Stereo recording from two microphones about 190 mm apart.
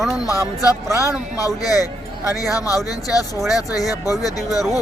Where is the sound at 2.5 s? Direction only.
20° left (ahead or behind).